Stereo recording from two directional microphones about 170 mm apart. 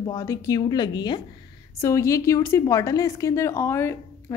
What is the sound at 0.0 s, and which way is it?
A woman's voice, 20° left (ahead or behind).